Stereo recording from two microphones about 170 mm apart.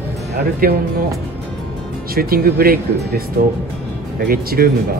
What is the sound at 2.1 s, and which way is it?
Speech, 60° right (ahead or behind).